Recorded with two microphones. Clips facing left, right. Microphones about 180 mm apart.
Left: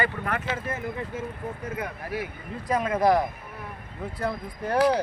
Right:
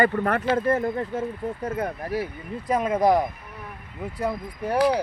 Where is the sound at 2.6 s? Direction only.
25° right (ahead or behind).